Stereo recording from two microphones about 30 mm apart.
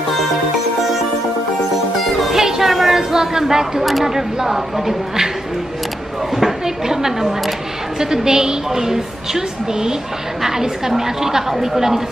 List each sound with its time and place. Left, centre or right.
2.3 s music: centre
2.7 s a sound: centre
3.0 s a woman's voice: centre
6.3 s a woman's voice: centre